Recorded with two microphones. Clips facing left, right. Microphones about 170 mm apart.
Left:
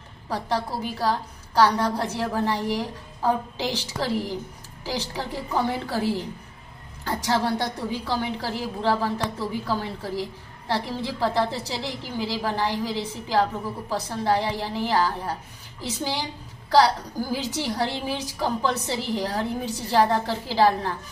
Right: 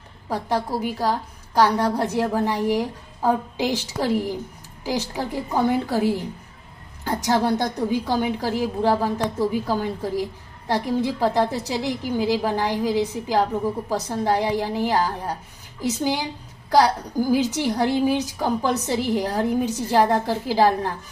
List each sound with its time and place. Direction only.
0.3 s a woman's voice: 15° right (ahead or behind)
7.2 s a woman's voice: 15° right (ahead or behind)
18.4 s a woman's voice: 45° right (ahead or behind)
19.1 s a woman's voice: 15° right (ahead or behind)